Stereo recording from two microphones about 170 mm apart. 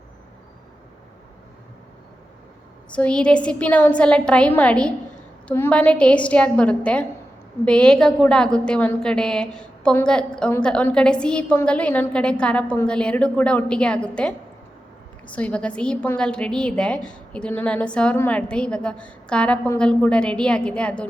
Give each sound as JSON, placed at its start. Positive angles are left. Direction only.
{"t": 2.9, "sound": "a woman's voice", "side_deg": 5}